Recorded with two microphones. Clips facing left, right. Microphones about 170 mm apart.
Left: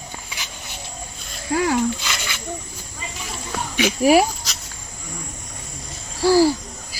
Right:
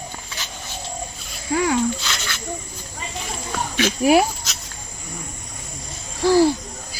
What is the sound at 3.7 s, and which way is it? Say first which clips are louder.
Dog: left 1 dB; 10° left (ahead or behind).